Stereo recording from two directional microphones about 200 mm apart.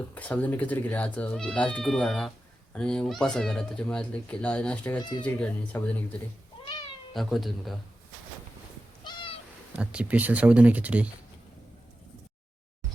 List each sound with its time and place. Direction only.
0.1 s speech: 10° left (ahead or behind)
7.1 s speech: centre (ahead or behind)
9.0 s cat: 25° left (ahead or behind)
9.7 s speech: 5° right (ahead or behind)